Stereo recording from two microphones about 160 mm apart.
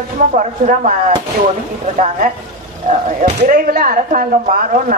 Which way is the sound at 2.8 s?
65° right (ahead or behind).